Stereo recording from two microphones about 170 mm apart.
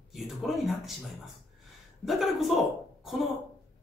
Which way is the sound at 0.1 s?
Centre (ahead or behind).